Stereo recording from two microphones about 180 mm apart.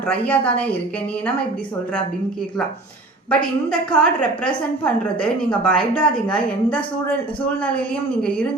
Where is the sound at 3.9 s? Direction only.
5° left (ahead or behind).